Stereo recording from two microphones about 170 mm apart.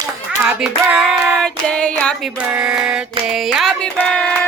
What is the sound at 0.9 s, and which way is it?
Child singing, centre (ahead or behind).